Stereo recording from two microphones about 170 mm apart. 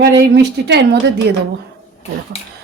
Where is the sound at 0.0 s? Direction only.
75° right (ahead or behind).